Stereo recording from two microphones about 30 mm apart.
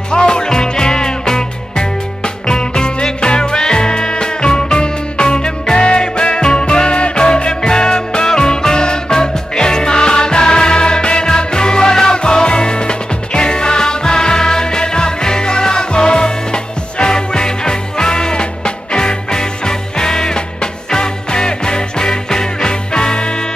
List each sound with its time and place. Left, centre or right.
0.1 s music: left